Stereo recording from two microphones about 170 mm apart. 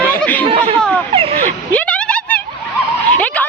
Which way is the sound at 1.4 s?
10° left (ahead or behind).